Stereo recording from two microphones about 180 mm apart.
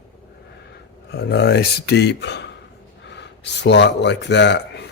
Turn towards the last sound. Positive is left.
turn(degrees=75)  # may be behind; listen again after turning